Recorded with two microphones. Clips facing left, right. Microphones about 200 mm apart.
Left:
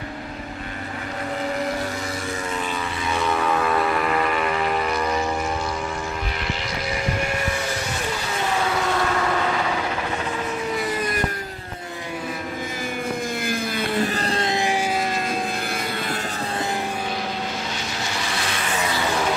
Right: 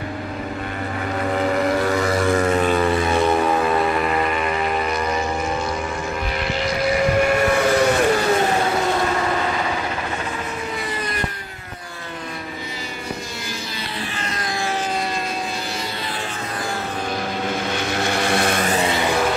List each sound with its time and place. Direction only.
1.3 s vehicle: 80° right; by 3.3 s 50° right (ahead or behind)
3.3 s vehicle: 30° right (ahead or behind)
7.2 s vehicle: 65° right (ahead or behind)
13.5 s vehicle: 45° left (ahead or behind)
14.2 s music: 30° left (ahead or behind)
17.7 s vehicle: 55° right (ahead or behind)
18.8 s music: 25° right (ahead or behind)